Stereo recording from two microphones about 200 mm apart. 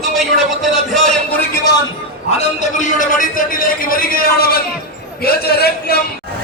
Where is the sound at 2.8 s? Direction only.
40° left (ahead or behind).